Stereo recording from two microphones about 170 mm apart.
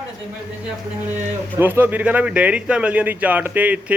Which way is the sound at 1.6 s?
10° right (ahead or behind).